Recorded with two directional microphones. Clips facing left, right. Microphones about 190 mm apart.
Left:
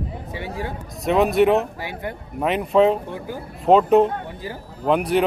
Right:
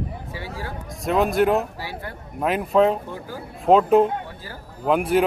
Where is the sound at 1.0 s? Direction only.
Centre (ahead or behind).